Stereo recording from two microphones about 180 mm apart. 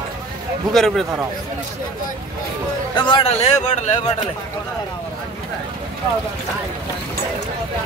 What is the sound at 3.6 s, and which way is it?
Speech, 40° left (ahead or behind).